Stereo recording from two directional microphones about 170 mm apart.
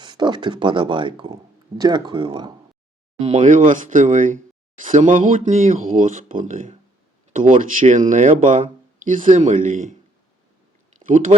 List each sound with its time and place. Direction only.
0.0 s speech: 25° right (ahead or behind)
3.2 s speech: 40° right (ahead or behind)
11.0 s speech: 50° right (ahead or behind)